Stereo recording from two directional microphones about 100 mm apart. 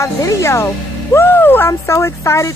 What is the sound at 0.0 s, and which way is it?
Speech, 30° left (ahead or behind).